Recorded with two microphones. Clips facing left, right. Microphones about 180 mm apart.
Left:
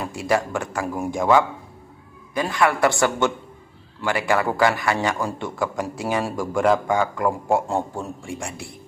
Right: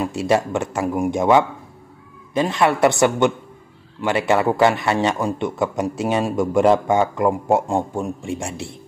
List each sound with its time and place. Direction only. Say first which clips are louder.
0.0 s a man's voice: right 4 dB; 20° right (ahead or behind)